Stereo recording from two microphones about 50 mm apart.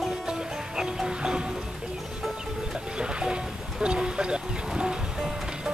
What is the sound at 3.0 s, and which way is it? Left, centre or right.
Music, centre.